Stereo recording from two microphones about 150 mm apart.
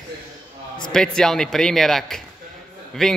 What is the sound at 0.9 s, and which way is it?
A man's voice, 5° left (ahead or behind).